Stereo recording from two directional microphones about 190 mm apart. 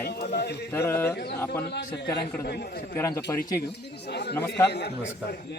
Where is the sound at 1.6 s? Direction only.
60° left (ahead or behind).